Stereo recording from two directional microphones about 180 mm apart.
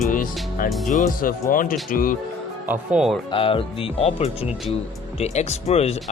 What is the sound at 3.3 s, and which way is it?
Speech, 30° left (ahead or behind).